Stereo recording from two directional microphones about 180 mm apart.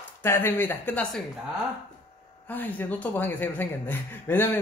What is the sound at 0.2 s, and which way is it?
Speech, 10° left (ahead or behind).